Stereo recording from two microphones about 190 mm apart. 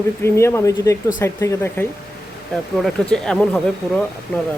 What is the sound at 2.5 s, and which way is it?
Speech, centre (ahead or behind).